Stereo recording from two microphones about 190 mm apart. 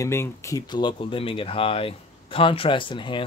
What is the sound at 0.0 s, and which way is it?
Speech, 15° left (ahead or behind).